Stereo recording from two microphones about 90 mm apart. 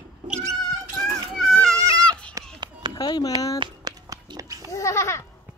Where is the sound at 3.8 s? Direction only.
40° right (ahead or behind).